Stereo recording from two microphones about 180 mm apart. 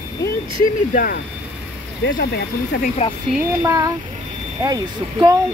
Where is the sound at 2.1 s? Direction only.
70° left (ahead or behind).